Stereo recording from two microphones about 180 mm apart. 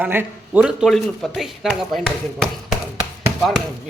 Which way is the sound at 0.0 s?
10° right (ahead or behind).